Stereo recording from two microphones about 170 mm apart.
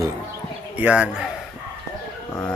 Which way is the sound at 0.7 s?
10° right (ahead or behind).